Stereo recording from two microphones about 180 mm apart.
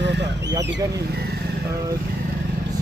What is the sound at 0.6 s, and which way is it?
Speech, 75° right (ahead or behind).